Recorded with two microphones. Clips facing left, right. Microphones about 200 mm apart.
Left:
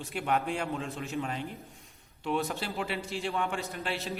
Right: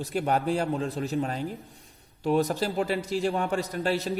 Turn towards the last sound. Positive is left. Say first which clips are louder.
# right 8 dB
turn(degrees=-35)  # may be behind; listen again after turning